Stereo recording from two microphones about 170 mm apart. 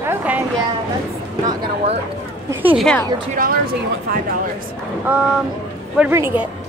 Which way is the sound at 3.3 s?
55° right (ahead or behind).